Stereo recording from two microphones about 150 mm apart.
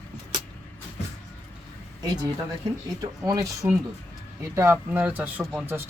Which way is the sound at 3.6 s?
20° right (ahead or behind).